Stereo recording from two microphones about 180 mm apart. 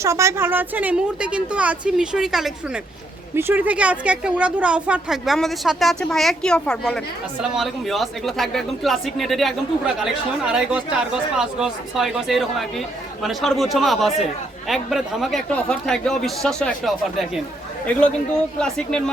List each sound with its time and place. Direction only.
0.0 s a woman's voice: 15° right (ahead or behind); by 19.1 s 5° left (ahead or behind)